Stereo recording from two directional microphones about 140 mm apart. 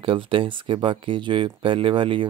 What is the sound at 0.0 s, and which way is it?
Speech, 40° right (ahead or behind).